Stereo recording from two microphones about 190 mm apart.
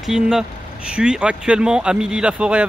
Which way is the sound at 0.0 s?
5° right (ahead or behind).